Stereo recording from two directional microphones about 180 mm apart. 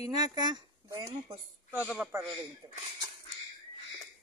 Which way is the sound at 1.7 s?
5° right (ahead or behind).